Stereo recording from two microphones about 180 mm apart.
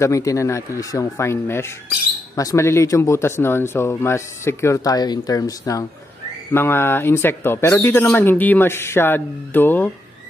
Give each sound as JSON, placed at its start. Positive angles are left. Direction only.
{"t": 0.0, "sound": "speech", "side_deg": 15}